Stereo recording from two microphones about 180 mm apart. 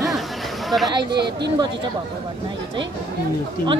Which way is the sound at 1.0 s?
70° right (ahead or behind).